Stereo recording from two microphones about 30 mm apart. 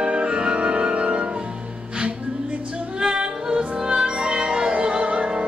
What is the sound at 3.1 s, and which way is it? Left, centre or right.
Music, right.